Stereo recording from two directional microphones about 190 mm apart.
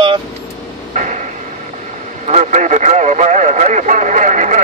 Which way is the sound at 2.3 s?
40° right (ahead or behind).